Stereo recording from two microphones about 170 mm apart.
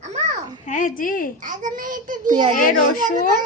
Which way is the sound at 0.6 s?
50° left (ahead or behind).